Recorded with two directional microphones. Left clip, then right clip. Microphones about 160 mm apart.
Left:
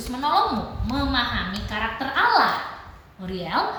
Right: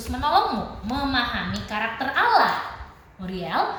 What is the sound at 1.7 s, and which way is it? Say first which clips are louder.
Speech: right 1 dB; 25° right (ahead or behind).